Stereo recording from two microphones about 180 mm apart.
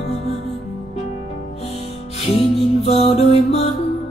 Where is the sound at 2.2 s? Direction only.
35° left (ahead or behind).